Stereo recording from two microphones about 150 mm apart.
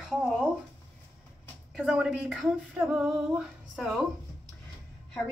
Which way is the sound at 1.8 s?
5° right (ahead or behind).